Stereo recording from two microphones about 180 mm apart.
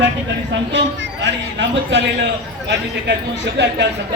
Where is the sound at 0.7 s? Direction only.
75° right (ahead or behind).